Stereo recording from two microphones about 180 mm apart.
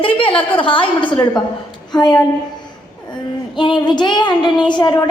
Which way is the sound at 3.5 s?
25° left (ahead or behind).